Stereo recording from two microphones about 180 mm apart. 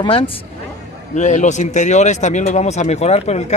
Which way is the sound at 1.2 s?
40° left (ahead or behind).